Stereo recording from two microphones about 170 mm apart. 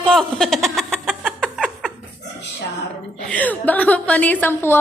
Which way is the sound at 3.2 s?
10° left (ahead or behind).